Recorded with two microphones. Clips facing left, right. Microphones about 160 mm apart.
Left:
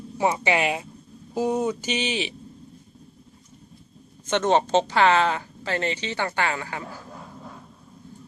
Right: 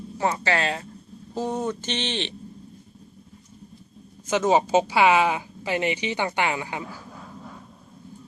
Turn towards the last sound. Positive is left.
turn(degrees=-15)  # may be behind; listen again after turning